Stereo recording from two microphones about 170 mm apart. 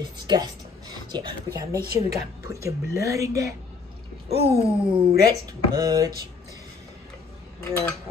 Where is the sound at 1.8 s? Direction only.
65° right (ahead or behind).